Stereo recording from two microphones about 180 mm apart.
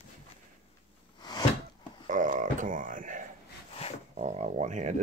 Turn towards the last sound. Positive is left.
turn(degrees=-40)  # may be behind; listen again after turning